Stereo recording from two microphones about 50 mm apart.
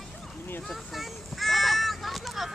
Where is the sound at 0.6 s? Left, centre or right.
Centre.